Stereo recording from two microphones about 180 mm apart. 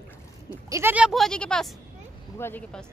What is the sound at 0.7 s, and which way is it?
Speech, 15° right (ahead or behind).